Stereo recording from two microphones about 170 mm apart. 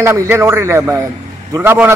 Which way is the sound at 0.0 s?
15° right (ahead or behind).